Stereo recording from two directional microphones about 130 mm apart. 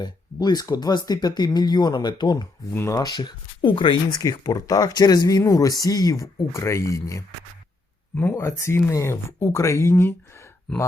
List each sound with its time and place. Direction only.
0.0 s speech: 35° left (ahead or behind)
4.2 s speech: 25° left (ahead or behind)